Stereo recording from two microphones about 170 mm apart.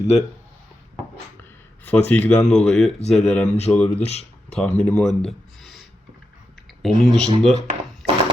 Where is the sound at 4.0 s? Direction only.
40° left (ahead or behind).